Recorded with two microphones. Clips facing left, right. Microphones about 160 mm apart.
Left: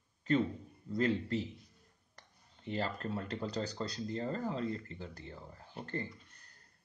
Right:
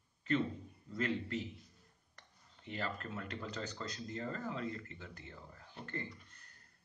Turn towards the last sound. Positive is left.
turn(degrees=35)  # may be behind; listen again after turning